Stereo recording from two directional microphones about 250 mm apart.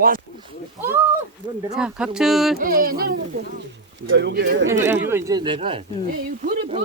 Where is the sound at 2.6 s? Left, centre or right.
Right.